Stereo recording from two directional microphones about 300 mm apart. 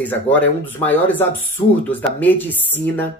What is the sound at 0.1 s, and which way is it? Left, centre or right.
Speech, centre.